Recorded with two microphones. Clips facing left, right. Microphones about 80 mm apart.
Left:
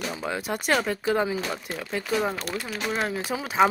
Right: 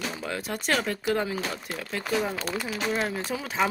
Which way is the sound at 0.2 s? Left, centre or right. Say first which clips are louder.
Left 3 dB; centre.